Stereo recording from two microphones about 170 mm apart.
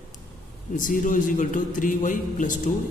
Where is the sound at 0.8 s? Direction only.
50° left (ahead or behind).